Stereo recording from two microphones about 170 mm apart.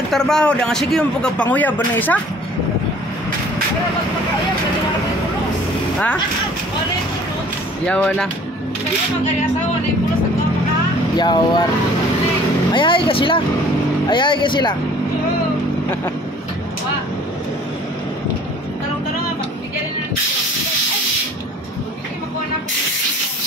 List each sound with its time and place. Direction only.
0.1 s speech: 5° left (ahead or behind)
7.8 s speech: 5° left (ahead or behind)
11.1 s speech: 25° left (ahead or behind)
12.7 s speech: 30° left (ahead or behind)